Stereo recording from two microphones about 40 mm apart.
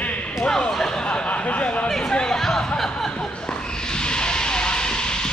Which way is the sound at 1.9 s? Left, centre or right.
Centre.